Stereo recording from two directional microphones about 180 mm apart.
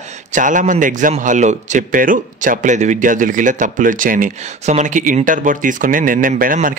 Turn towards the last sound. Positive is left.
turn(degrees=-50)  # may be behind; listen again after turning